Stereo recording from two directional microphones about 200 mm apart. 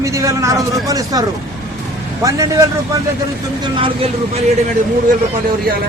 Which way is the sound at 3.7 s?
25° right (ahead or behind).